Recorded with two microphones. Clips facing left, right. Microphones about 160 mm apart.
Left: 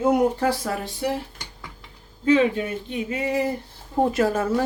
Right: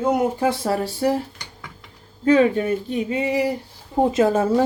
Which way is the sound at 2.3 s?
45° right (ahead or behind).